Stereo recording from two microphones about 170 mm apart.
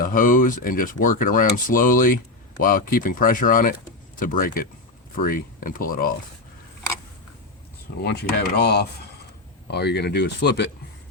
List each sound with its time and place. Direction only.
0.0 s speech: 55° left (ahead or behind)
8.0 s speech: 70° left (ahead or behind)